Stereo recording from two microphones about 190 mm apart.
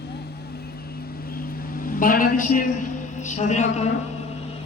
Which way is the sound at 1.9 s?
45° left (ahead or behind).